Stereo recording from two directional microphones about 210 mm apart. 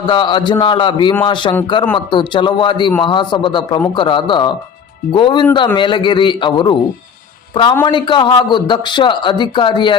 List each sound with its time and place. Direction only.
0.0 s a man's voice: 20° left (ahead or behind)